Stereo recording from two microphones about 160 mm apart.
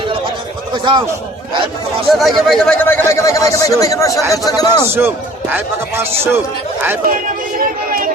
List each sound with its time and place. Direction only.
0.7 s a man's voice: 30° right (ahead or behind)
2.0 s speech: centre (ahead or behind); by 4.9 s 25° left (ahead or behind)
4.9 s a man's voice: 15° right (ahead or behind)
7.6 s music: 60° right (ahead or behind)